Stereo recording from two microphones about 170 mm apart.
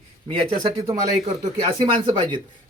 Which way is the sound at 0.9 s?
25° right (ahead or behind).